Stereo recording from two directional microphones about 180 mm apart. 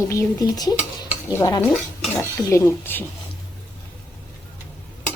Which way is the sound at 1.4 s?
20° left (ahead or behind).